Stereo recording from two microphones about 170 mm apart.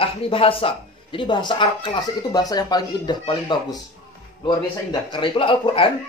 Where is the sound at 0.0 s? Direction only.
35° left (ahead or behind).